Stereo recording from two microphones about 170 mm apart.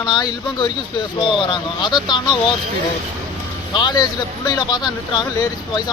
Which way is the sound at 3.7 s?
25° left (ahead or behind).